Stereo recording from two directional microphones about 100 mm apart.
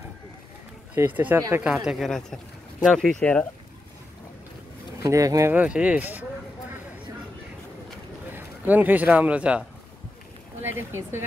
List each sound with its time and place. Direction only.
0.9 s speech: 20° right (ahead or behind)
1.9 s speech: centre (ahead or behind)
5.0 s speech: 35° right (ahead or behind)
5.5 s speech: 15° right (ahead or behind)
8.3 s speech: 15° right (ahead or behind)
10.6 s speech: 25° right (ahead or behind)